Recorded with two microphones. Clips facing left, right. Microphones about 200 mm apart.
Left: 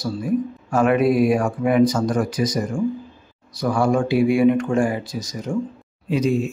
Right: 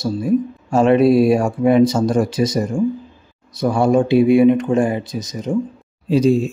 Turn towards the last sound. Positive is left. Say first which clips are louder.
# right 5 dB
turn(degrees=-30)  # may be behind; listen again after turning